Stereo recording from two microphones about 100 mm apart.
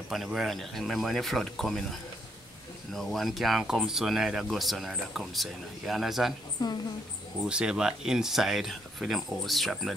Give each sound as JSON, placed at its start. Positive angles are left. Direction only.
{"t": 0.1, "sound": "speech", "side_deg": 0}
{"t": 6.6, "sound": "a woman's voice", "side_deg": 40}
{"t": 7.4, "sound": "speech", "side_deg": -10}